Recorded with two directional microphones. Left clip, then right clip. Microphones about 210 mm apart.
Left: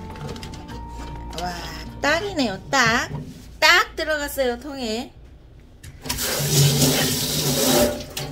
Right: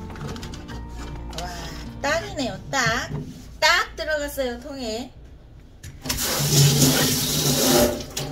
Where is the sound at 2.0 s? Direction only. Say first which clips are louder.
Left 3 dB; 50° left (ahead or behind).